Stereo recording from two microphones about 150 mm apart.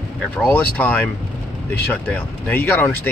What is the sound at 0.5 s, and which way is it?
Speech, 10° left (ahead or behind).